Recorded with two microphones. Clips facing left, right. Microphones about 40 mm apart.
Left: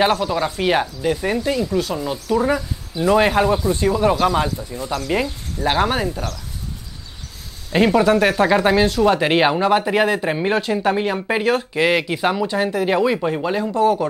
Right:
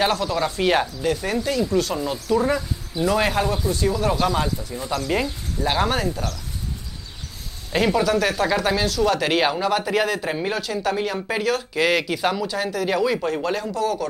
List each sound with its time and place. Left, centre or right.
0.0 s speech: centre
7.7 s speech: centre
8.0 s speech: left
13.7 s speech: left